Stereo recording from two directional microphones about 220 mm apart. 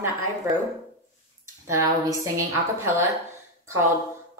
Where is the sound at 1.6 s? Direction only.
15° right (ahead or behind).